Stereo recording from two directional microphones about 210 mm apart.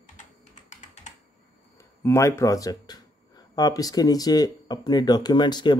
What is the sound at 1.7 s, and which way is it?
Speech, 15° left (ahead or behind).